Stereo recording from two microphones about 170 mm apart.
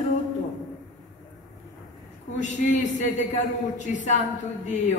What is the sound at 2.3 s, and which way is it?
A woman's voice, 45° left (ahead or behind).